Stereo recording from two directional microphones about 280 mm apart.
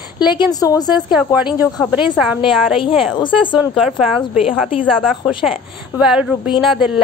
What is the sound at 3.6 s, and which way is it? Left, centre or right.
Speech, centre.